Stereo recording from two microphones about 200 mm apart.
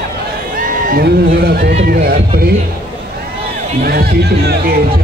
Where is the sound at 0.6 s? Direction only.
45° right (ahead or behind).